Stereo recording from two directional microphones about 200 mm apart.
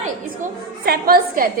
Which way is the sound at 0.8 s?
50° right (ahead or behind).